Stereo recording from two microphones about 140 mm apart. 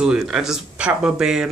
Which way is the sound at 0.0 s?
5° right (ahead or behind).